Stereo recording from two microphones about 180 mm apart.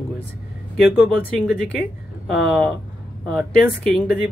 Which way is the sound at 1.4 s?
5° right (ahead or behind).